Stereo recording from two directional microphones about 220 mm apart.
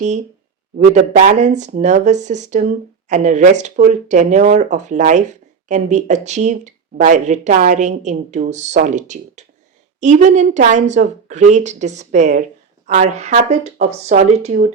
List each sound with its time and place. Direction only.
0.8 s speech: 35° right (ahead or behind)